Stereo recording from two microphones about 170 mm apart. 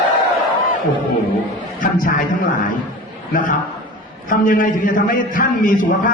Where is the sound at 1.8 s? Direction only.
50° left (ahead or behind).